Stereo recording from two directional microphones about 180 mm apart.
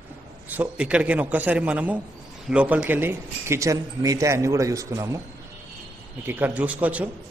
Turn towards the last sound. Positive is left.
turn(degrees=-10)  # may be behind; listen again after turning